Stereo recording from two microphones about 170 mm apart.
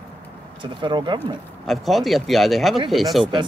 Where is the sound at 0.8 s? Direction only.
25° right (ahead or behind).